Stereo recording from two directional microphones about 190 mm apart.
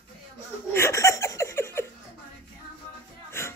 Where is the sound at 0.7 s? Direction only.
15° left (ahead or behind).